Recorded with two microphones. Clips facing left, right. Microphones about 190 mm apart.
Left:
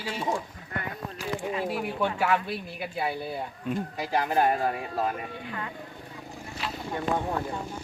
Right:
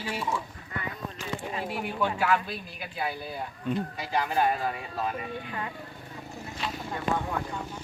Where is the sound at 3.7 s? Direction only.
50° left (ahead or behind).